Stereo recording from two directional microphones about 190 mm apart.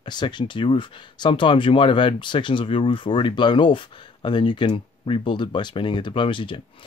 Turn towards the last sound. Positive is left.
turn(degrees=25)  # may be behind; listen again after turning